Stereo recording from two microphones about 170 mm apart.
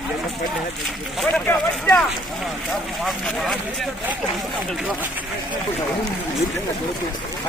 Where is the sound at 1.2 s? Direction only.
10° left (ahead or behind).